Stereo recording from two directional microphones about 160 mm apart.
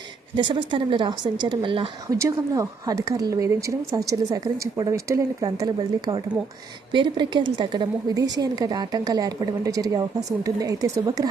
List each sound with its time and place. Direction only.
0.3 s speech: 30° right (ahead or behind)
2.0 s a woman's voice: 20° right (ahead or behind)